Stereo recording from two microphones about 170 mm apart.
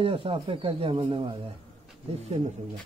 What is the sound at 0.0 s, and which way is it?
Speech, 30° right (ahead or behind).